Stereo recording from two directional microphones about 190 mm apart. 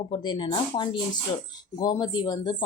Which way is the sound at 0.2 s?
25° left (ahead or behind).